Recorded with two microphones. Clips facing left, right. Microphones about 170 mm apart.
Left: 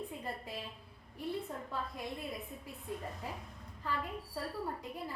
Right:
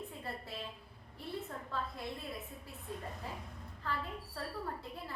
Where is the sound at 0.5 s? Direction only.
15° left (ahead or behind).